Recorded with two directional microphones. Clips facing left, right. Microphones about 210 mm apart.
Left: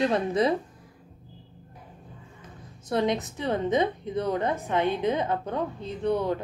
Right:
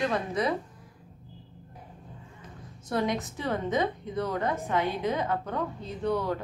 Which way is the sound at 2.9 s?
20° left (ahead or behind).